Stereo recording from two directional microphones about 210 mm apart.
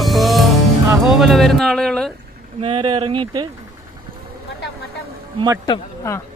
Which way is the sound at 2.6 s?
25° right (ahead or behind).